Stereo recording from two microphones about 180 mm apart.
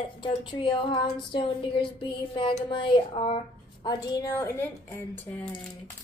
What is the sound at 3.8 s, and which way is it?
A woman's voice, 15° left (ahead or behind).